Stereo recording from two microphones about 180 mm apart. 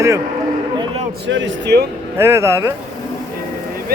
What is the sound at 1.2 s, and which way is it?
Speech, 90° right.